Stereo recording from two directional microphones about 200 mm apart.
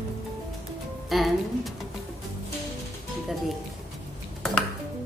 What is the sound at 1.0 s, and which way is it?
Speech, centre (ahead or behind).